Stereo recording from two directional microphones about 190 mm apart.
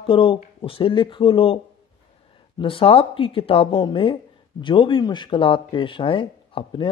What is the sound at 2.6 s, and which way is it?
Speech, 30° left (ahead or behind).